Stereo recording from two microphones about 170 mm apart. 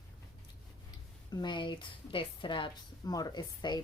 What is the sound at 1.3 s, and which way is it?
A woman's voice, 30° left (ahead or behind).